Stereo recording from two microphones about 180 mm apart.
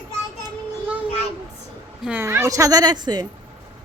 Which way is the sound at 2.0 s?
10° right (ahead or behind).